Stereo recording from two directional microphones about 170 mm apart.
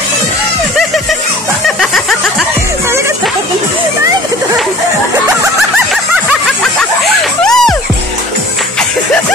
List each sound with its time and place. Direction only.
7.4 s music: 5° left (ahead or behind)